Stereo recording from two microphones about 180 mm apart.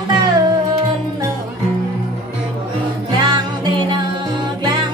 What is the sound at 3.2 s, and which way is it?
Music, 25° right (ahead or behind).